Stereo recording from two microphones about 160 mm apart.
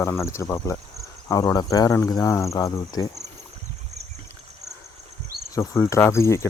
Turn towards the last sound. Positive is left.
turn(degrees=15)  # may be behind; listen again after turning